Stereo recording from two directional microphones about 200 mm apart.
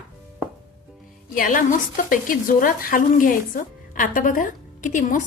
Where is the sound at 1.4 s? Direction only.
40° left (ahead or behind).